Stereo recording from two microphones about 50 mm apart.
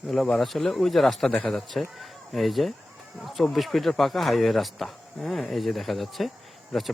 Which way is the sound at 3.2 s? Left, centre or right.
Centre.